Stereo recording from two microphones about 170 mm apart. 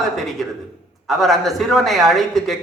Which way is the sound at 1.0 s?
Centre (ahead or behind).